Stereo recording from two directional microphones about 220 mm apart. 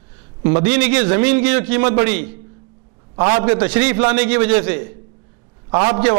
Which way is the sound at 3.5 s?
10° right (ahead or behind).